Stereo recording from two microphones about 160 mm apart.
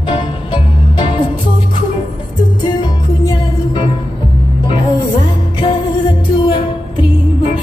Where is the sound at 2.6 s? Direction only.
30° left (ahead or behind).